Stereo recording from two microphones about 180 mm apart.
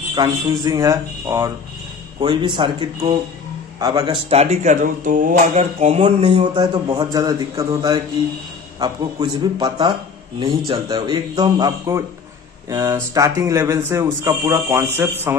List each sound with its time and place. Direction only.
0.1 s speech: 20° right (ahead or behind)
4.3 s speech: 35° right (ahead or behind); by 15.3 s 10° right (ahead or behind)